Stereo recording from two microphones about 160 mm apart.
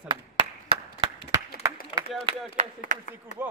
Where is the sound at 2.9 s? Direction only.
50° right (ahead or behind).